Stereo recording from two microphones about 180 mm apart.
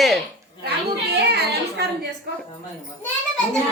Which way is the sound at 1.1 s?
65° right (ahead or behind).